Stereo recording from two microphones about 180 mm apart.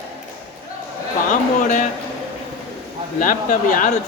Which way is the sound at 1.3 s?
45° left (ahead or behind).